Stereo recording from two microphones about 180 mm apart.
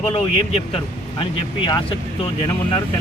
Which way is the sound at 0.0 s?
30° left (ahead or behind).